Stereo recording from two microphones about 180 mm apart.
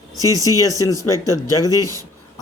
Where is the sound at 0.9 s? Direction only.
20° right (ahead or behind).